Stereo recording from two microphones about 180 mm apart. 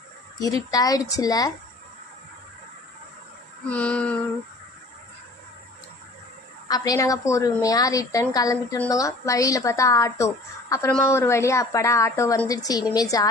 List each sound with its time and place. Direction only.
0.7 s a woman's voice: 20° left (ahead or behind)
3.7 s a woman's voice: 5° left (ahead or behind)
6.7 s a woman's voice: 20° left (ahead or behind)